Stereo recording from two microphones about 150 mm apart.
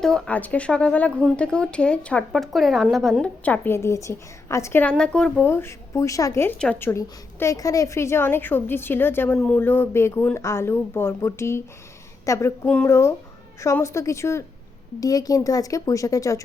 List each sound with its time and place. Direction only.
0.0 s a woman's voice: 5° left (ahead or behind)
5.5 s a woman's voice: 15° left (ahead or behind)
12.6 s a woman's voice: 5° left (ahead or behind)
12.9 s a woman's voice: 15° left (ahead or behind)